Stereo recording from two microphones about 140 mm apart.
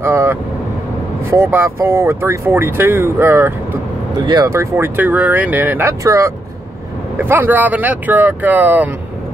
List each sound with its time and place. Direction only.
0.0 s vehicle: 20° right (ahead or behind)
1.3 s speech: 15° right (ahead or behind)